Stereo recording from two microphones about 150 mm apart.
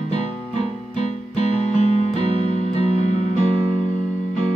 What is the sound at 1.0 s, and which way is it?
Music, 50° left (ahead or behind).